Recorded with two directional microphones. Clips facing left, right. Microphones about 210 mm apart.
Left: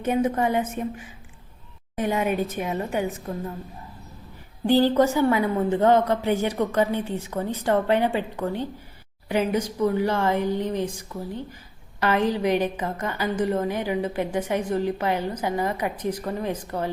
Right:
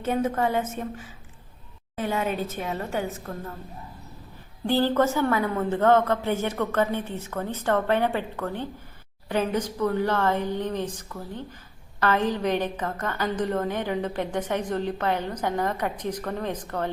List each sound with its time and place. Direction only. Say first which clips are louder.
0.0 s a woman's voice: left 2 dB; 15° left (ahead or behind)
4.6 s a woman's voice: left 3 dB; 15° left (ahead or behind)